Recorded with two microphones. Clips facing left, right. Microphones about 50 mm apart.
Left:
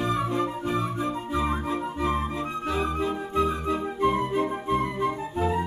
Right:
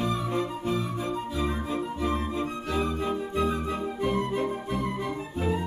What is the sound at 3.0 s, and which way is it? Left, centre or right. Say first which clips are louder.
Music: left 2 dB; centre.